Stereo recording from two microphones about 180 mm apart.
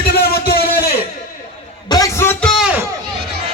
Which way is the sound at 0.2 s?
60° left (ahead or behind).